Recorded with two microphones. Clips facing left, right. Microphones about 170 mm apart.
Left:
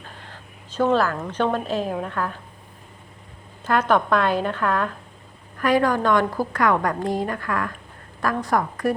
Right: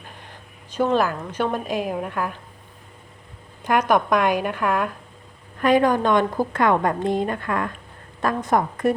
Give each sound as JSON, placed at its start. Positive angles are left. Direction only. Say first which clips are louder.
{"t": 0.2, "sound": "a sound", "louder": "left 1 dB", "side_deg": -15}
{"t": 0.9, "sound": "a woman's voice", "louder": "even", "side_deg": -15}
{"t": 3.6, "sound": "a woman's voice", "louder": "right 1 dB", "side_deg": -15}